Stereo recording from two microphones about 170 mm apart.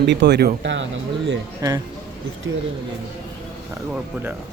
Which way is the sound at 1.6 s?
20° right (ahead or behind).